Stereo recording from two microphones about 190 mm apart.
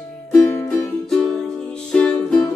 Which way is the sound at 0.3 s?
10° left (ahead or behind).